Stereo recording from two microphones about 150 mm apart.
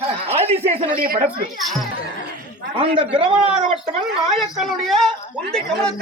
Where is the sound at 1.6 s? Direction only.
Centre (ahead or behind).